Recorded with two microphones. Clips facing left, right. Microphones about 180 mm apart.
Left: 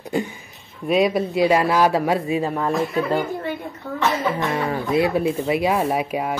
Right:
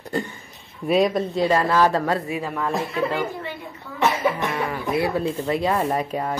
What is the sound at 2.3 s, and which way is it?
Speech, 25° left (ahead or behind).